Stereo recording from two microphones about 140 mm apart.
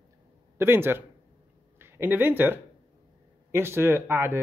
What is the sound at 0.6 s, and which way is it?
Speech, 15° right (ahead or behind).